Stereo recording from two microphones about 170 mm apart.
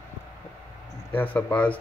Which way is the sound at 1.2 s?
10° left (ahead or behind).